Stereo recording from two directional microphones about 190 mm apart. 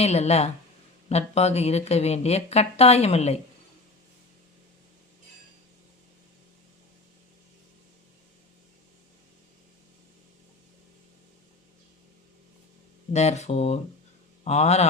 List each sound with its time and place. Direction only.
0.0 s speech: 35° left (ahead or behind)
13.1 s speech: 35° left (ahead or behind)